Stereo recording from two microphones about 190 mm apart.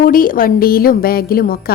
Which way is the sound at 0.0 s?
50° left (ahead or behind).